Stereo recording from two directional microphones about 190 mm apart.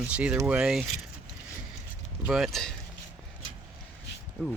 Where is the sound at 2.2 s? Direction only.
Centre (ahead or behind).